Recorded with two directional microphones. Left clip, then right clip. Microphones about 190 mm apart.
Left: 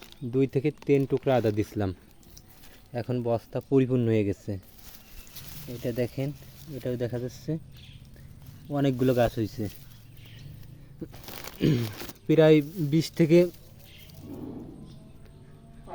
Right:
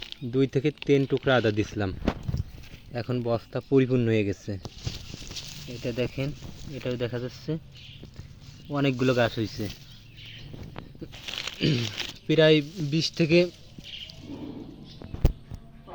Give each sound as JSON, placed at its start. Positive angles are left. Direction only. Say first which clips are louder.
{"t": 0.1, "sound": "speech", "louder": "even", "side_deg": 5}
{"t": 2.9, "sound": "speech", "louder": "even", "side_deg": 5}
{"t": 5.8, "sound": "speech", "louder": "even", "side_deg": 10}
{"t": 8.7, "sound": "speech", "louder": "even", "side_deg": 15}
{"t": 11.3, "sound": "crumpling", "louder": "right 13 dB", "side_deg": 15}
{"t": 11.6, "sound": "speech", "louder": "left 1 dB", "side_deg": 25}
{"t": 12.9, "sound": "speech", "louder": "left 1 dB", "side_deg": 30}